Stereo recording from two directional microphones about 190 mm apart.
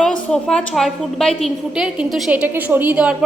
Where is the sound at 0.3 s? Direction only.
5° left (ahead or behind).